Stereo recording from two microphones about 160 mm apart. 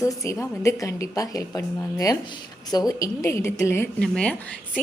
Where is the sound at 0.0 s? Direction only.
20° left (ahead or behind).